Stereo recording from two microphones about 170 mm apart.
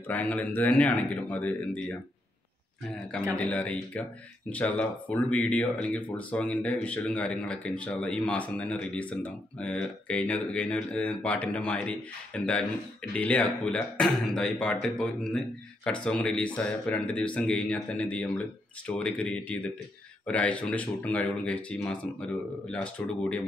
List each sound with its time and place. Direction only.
0.1 s speech: 10° left (ahead or behind)
3.1 s speech: 5° left (ahead or behind)